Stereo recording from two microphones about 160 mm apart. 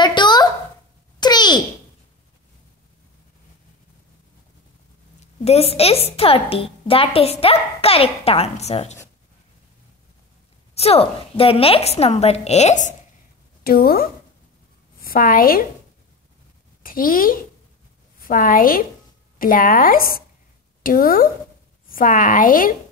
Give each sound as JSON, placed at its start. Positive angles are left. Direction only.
{"t": 0.0, "sound": "a sound", "side_deg": 30}
{"t": 5.2, "sound": "a woman's voice", "side_deg": 40}
{"t": 10.7, "sound": "a woman's voice", "side_deg": 40}
{"t": 13.7, "sound": "a woman's voice", "side_deg": 70}
{"t": 16.8, "sound": "a woman's voice", "side_deg": 60}